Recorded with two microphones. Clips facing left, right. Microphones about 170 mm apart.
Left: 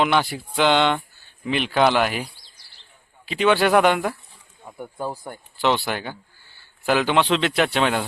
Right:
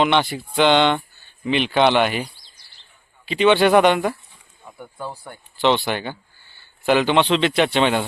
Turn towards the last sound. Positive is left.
turn(degrees=0)  # may be behind; listen again after turning